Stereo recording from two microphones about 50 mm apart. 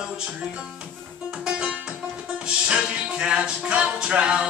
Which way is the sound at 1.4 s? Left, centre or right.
Centre.